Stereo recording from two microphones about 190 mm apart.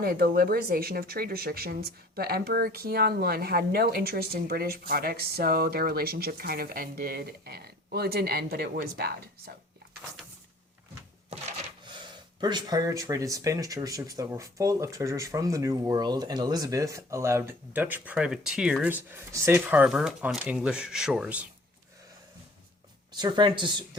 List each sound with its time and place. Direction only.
0.0 s speech: 50° right (ahead or behind)
11.9 s speech: 25° right (ahead or behind); by 21.4 s 5° right (ahead or behind)
23.1 s speech: 25° right (ahead or behind)